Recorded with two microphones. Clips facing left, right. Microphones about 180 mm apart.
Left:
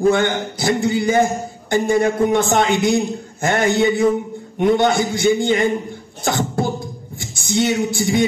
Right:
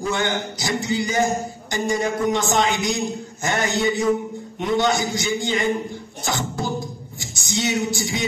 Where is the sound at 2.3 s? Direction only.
55° left (ahead or behind).